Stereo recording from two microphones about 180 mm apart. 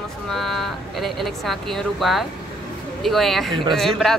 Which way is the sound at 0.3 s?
Centre (ahead or behind).